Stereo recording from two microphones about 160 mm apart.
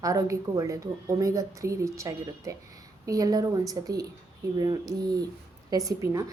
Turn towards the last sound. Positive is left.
turn(degrees=-20)  # may be behind; listen again after turning